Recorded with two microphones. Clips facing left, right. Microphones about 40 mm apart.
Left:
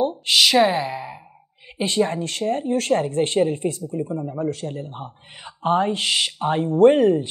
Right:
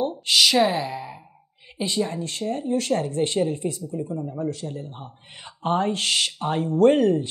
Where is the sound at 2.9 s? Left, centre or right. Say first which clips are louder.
Left 6 dB; left.